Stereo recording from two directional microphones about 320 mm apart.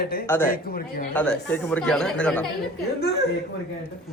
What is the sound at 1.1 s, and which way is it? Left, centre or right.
Speech, centre.